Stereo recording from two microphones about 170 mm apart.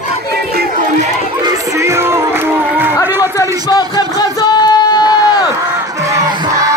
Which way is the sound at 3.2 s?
20° left (ahead or behind).